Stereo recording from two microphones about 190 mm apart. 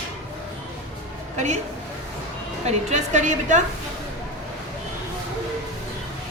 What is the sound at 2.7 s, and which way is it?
Speech, 35° right (ahead or behind).